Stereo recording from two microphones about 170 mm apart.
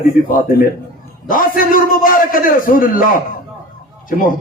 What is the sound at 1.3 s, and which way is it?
A man's voice, 55° left (ahead or behind).